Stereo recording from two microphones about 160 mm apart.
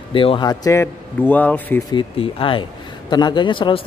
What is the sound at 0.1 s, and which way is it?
Speech, 35° left (ahead or behind).